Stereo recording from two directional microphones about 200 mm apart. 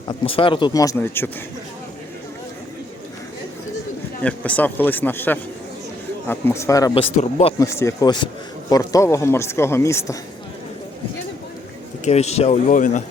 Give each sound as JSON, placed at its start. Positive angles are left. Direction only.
{"t": 0.1, "sound": "speech", "side_deg": 25}
{"t": 4.2, "sound": "speech", "side_deg": 5}
{"t": 7.0, "sound": "speech", "side_deg": 35}
{"t": 7.6, "sound": "speech", "side_deg": 15}
{"t": 12.0, "sound": "speech", "side_deg": 35}